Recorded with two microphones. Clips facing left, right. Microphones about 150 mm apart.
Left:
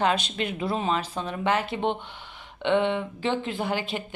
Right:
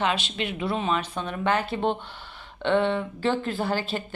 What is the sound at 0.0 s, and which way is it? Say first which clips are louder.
A woman's voice: left 2 dB; 40° left (ahead or behind).